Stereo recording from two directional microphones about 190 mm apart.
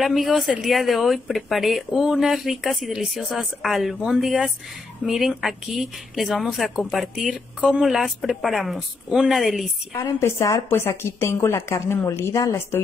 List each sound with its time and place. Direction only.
0.0 s a woman's voice: centre (ahead or behind)
9.9 s a woman's voice: 15° left (ahead or behind)